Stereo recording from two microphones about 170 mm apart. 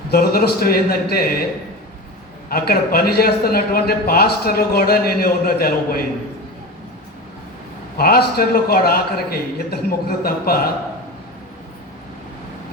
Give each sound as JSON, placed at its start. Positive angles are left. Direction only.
{"t": 0.1, "sound": "a man's voice", "side_deg": 65}
{"t": 2.5, "sound": "a man's voice", "side_deg": 65}
{"t": 7.9, "sound": "a man's voice", "side_deg": 65}